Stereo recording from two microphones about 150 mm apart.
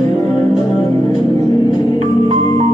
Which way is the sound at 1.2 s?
30° left (ahead or behind).